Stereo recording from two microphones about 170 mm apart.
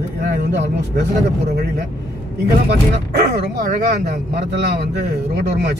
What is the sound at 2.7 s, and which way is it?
Speech, 65° right (ahead or behind).